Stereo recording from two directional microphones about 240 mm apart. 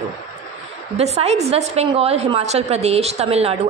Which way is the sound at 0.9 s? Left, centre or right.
Right.